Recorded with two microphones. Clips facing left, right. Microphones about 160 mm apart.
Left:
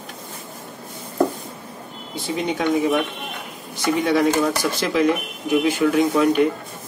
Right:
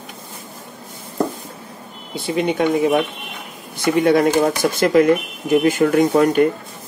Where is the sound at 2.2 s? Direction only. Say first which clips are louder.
Right 4 dB; 65° right (ahead or behind).